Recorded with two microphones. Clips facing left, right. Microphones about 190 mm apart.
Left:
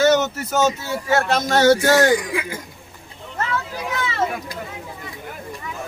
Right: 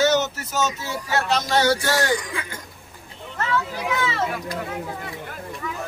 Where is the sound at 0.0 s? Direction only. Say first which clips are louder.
Left 3 dB; 55° left (ahead or behind).